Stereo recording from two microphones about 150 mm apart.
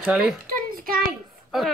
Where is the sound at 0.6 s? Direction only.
75° right (ahead or behind).